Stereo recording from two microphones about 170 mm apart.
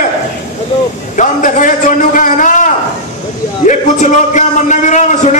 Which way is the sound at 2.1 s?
50° left (ahead or behind).